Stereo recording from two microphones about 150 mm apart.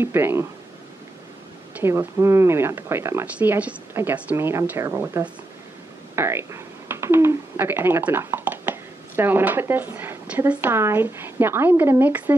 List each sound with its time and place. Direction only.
0.0 s speech: 15° right (ahead or behind)
1.8 s speech: 15° right (ahead or behind)